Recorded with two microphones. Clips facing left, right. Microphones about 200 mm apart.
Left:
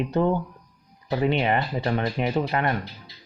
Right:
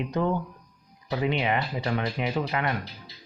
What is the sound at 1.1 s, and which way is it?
Speech, 40° left (ahead or behind).